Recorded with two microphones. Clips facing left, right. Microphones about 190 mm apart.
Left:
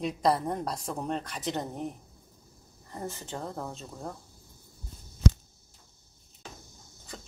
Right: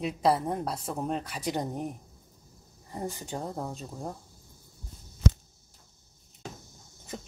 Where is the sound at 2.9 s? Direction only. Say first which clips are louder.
Right 2 dB; 15° right (ahead or behind).